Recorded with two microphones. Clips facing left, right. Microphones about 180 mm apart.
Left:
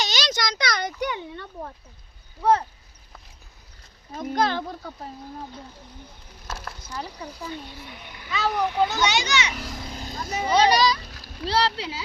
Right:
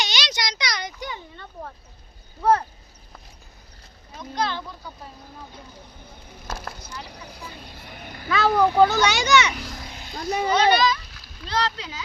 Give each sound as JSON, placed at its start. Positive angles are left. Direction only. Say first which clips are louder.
{"t": 0.0, "sound": "a sound", "louder": "left 2 dB", "side_deg": 45}
{"t": 2.4, "sound": "speech", "louder": "right 1 dB", "side_deg": 20}
{"t": 4.1, "sound": "a child's voice", "louder": "left 4 dB", "side_deg": 45}
{"t": 7.9, "sound": "a child's voice", "louder": "right 7 dB", "side_deg": -50}
{"t": 9.9, "sound": "vehicle", "louder": "left 2 dB", "side_deg": 40}
{"t": 10.5, "sound": "a child's voice", "louder": "left 1 dB", "side_deg": 35}